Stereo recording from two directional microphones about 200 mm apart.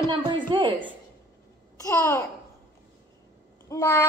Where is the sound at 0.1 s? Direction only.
25° right (ahead or behind).